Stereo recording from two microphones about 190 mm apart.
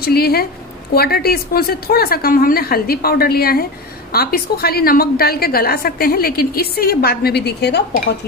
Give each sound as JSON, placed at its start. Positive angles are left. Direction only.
{"t": 0.0, "sound": "a woman's voice", "side_deg": 55}